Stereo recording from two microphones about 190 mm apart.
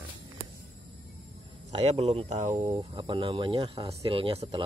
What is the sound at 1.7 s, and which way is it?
Speech, 30° right (ahead or behind).